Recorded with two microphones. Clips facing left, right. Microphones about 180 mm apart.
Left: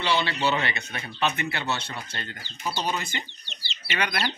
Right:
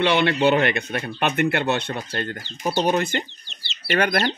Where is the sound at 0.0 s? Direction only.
60° right (ahead or behind).